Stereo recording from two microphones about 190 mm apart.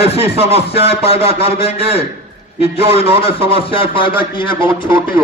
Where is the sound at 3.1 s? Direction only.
30° left (ahead or behind).